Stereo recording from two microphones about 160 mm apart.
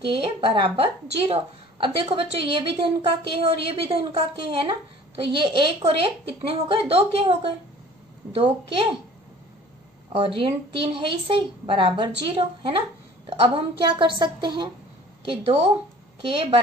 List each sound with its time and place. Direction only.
0.0 s a woman's voice: 35° right (ahead or behind)
10.1 s a woman's voice: 35° right (ahead or behind)